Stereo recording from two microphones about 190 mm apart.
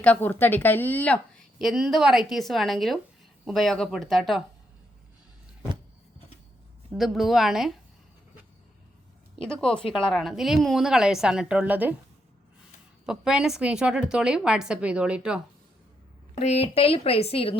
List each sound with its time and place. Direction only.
0.0 s speech: 10° left (ahead or behind)
6.9 s speech: centre (ahead or behind)
9.5 s speech: 5° left (ahead or behind)
13.1 s speech: 5° right (ahead or behind)
16.3 s a woman's voice: 35° left (ahead or behind)